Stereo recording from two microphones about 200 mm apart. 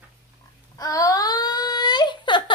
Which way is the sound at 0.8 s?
15° left (ahead or behind).